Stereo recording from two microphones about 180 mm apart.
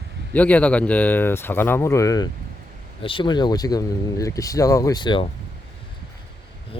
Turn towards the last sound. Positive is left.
turn(degrees=25)  # may be behind; listen again after turning